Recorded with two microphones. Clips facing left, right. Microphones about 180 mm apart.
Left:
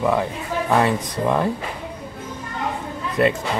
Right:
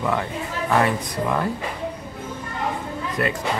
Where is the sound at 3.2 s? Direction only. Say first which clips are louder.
Left 6 dB; 25° left (ahead or behind).